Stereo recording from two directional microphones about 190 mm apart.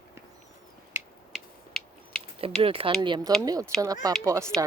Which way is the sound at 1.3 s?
5° left (ahead or behind).